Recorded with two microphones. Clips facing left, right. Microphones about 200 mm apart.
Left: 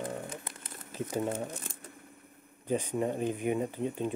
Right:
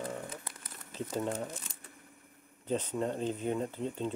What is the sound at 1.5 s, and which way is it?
Speech, 55° left (ahead or behind).